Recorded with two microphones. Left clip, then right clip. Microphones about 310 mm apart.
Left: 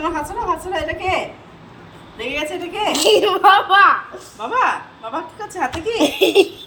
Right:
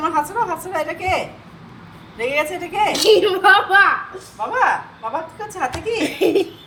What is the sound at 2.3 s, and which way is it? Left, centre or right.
Speech, centre.